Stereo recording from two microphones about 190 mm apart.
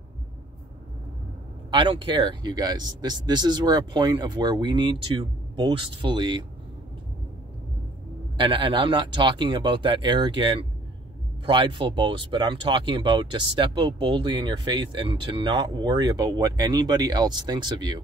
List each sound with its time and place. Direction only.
1.7 s speech: 25° right (ahead or behind)
8.4 s speech: 25° right (ahead or behind)